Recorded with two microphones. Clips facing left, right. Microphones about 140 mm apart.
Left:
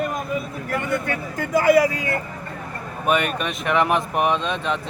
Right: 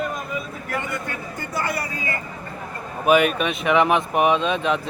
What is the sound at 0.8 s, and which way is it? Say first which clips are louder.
Speech: left 5 dB; 75° left (ahead or behind).